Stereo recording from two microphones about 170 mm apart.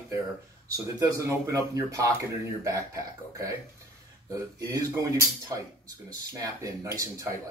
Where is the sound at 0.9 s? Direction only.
20° right (ahead or behind).